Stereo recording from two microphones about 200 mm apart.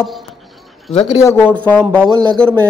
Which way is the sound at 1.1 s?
15° left (ahead or behind).